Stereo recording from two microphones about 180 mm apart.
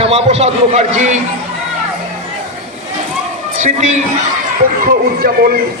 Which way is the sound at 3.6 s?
40° right (ahead or behind).